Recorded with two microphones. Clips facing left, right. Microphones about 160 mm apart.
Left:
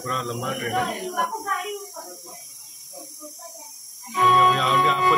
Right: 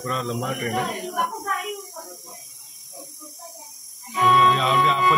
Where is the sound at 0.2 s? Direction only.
Centre (ahead or behind).